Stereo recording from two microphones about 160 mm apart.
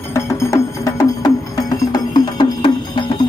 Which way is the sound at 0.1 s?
20° left (ahead or behind).